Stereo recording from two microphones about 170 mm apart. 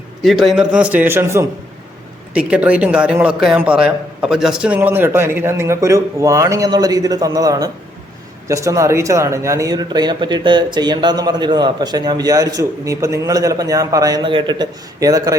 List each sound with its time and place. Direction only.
0.2 s a man's voice: centre (ahead or behind); by 15.4 s 20° right (ahead or behind)